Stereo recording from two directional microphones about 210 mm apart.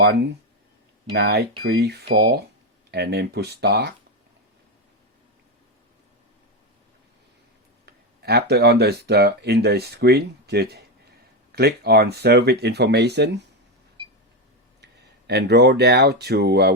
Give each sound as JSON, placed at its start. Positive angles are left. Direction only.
{"t": 0.0, "sound": "speech", "side_deg": -50}
{"t": 7.9, "sound": "speech", "side_deg": -50}
{"t": 15.3, "sound": "speech", "side_deg": -55}